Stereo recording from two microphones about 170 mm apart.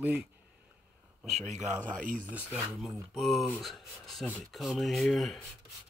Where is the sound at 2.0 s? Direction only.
50° right (ahead or behind).